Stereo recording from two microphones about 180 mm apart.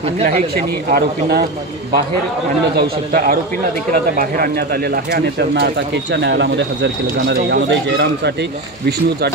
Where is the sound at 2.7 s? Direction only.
55° right (ahead or behind).